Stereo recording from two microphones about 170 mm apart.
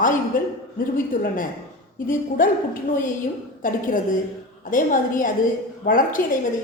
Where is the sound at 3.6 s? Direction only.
50° left (ahead or behind).